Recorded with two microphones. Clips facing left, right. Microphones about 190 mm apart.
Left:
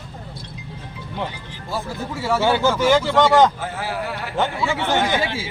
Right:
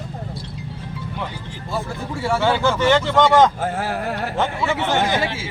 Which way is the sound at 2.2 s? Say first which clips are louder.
Even; 5° left (ahead or behind).